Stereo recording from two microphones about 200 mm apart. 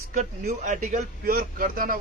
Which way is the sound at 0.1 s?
40° right (ahead or behind).